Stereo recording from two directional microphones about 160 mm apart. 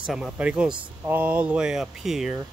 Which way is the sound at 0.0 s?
5° right (ahead or behind).